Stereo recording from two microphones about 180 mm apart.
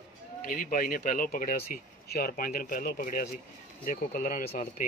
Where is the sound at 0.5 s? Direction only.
50° left (ahead or behind).